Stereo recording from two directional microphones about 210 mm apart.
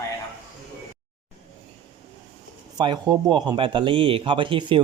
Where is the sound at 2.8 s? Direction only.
20° right (ahead or behind).